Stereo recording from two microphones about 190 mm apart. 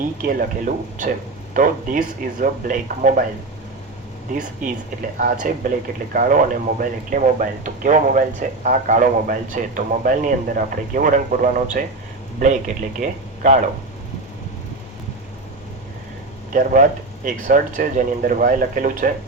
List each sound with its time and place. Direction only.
0.2 s speech: 45° right (ahead or behind)
5.2 s speech: 45° right (ahead or behind)
16.5 s speech: 45° right (ahead or behind)